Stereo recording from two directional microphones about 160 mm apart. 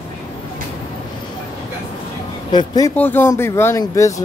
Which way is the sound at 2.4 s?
25° left (ahead or behind).